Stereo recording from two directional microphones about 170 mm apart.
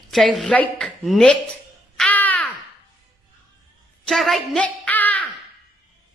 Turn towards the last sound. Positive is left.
turn(degrees=10)  # may be behind; listen again after turning